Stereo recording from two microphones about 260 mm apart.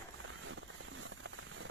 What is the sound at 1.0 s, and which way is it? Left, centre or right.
Rain on surface, right.